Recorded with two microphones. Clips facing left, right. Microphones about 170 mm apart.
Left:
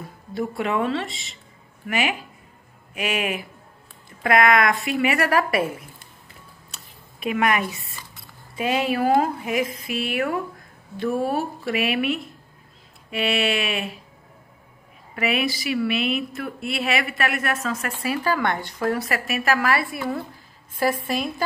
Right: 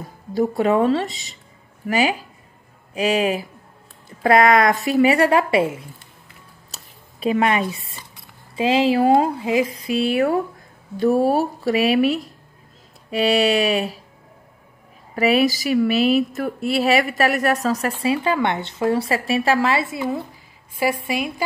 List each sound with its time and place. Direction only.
0.3 s speech: 35° right (ahead or behind)
6.7 s a sound: 30° right (ahead or behind)
8.5 s speech: 25° right (ahead or behind)
15.1 s a woman's voice: 35° right (ahead or behind); by 21.5 s 10° right (ahead or behind)